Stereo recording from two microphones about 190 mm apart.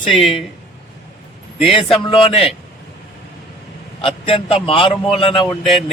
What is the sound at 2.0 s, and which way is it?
Speech, 30° left (ahead or behind).